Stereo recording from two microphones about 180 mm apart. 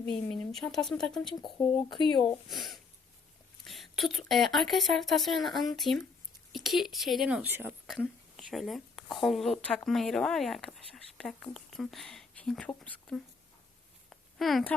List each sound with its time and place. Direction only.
0.5 s speech: centre (ahead or behind)
1.5 s speech: 25° left (ahead or behind)
2.5 s speech: centre (ahead or behind)
7.9 s a sound: centre (ahead or behind)
9.2 s speech: centre (ahead or behind)
14.1 s a sound: centre (ahead or behind)